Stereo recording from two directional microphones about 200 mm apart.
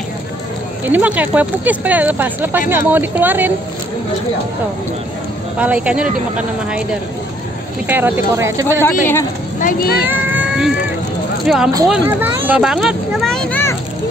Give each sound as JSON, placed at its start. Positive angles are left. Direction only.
{"t": 0.8, "sound": "speech", "side_deg": -10}
{"t": 5.6, "sound": "speech", "side_deg": -5}
{"t": 7.9, "sound": "speech", "side_deg": -10}
{"t": 8.8, "sound": "speech", "side_deg": 10}
{"t": 9.6, "sound": "speech", "side_deg": 45}
{"t": 10.0, "sound": "a sound", "side_deg": -10}
{"t": 11.4, "sound": "speech", "side_deg": 0}
{"t": 11.9, "sound": "a sound", "side_deg": -10}